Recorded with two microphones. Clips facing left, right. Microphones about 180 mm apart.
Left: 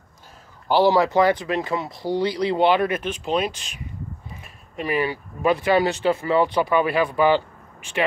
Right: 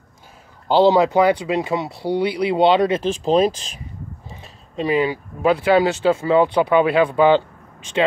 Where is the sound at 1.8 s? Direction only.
65° right (ahead or behind).